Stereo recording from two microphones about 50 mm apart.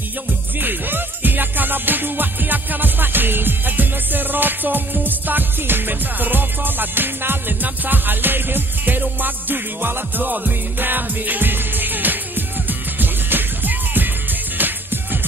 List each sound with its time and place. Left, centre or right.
0.6 s music: right